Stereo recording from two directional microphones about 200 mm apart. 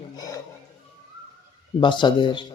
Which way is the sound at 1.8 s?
25° left (ahead or behind).